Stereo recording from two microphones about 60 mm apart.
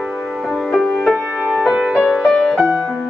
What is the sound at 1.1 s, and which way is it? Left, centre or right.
Music, centre.